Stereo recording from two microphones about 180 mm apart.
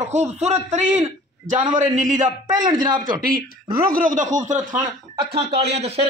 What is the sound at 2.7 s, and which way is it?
Speech, 25° right (ahead or behind).